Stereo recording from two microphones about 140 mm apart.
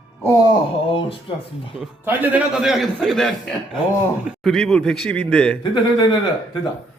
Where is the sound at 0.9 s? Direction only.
40° left (ahead or behind).